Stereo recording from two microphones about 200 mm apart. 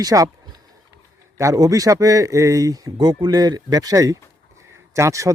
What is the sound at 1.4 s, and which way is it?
Speech, 15° right (ahead or behind).